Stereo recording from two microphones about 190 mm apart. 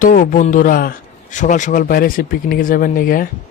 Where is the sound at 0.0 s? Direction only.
45° left (ahead or behind).